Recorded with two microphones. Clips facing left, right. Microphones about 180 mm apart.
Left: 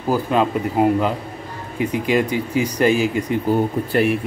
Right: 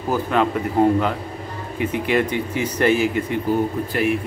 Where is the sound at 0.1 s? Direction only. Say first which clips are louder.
Left 2 dB; 15° left (ahead or behind).